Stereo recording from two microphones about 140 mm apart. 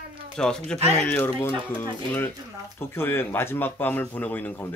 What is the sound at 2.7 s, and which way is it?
Speech, 15° left (ahead or behind).